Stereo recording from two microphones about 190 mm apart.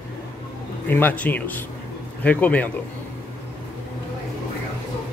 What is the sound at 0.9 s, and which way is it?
Speech, 10° left (ahead or behind).